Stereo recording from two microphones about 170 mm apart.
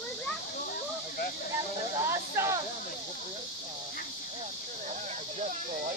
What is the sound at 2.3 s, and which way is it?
Speech, 15° right (ahead or behind).